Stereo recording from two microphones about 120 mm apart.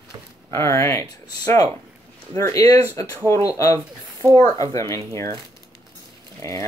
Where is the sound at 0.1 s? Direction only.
35° right (ahead or behind).